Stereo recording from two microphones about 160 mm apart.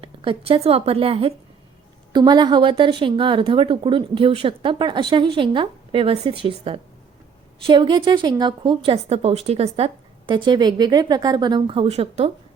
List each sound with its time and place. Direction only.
0.0 s a woman's voice: 35° right (ahead or behind)